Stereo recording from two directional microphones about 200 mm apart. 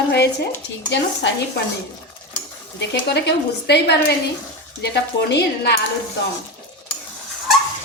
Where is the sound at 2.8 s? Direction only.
60° left (ahead or behind).